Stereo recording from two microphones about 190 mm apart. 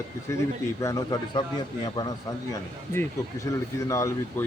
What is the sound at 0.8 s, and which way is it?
A man's voice, 15° left (ahead or behind).